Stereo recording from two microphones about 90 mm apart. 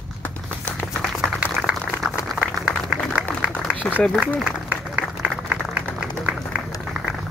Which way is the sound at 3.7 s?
20° left (ahead or behind).